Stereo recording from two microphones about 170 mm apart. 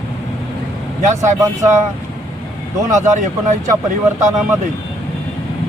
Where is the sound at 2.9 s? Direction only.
45° right (ahead or behind).